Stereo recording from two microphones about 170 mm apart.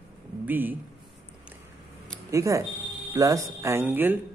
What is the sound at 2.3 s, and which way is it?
Speech, 20° right (ahead or behind).